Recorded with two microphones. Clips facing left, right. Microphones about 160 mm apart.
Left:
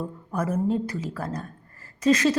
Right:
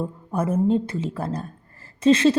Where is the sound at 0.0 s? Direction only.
25° right (ahead or behind).